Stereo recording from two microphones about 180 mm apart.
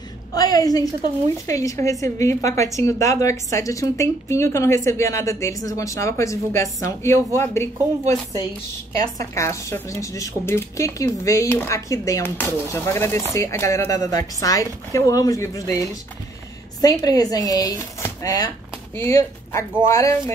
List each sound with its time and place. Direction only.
0.3 s a woman's voice: 20° left (ahead or behind)
8.9 s a woman's voice: 20° left (ahead or behind)
16.8 s a woman's voice: 20° left (ahead or behind)